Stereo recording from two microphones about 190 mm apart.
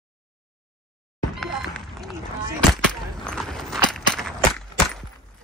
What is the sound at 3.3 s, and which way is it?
Walk, centre (ahead or behind).